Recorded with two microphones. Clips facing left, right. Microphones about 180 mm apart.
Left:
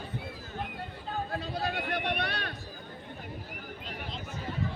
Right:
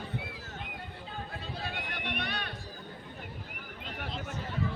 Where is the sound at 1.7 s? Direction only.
50° left (ahead or behind).